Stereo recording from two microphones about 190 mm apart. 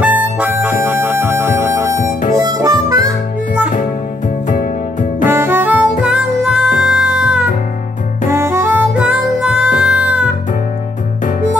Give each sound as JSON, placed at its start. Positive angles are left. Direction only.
{"t": 0.0, "sound": "harmonica", "side_deg": -10}
{"t": 5.2, "sound": "harmonica", "side_deg": -10}
{"t": 8.3, "sound": "music", "side_deg": -15}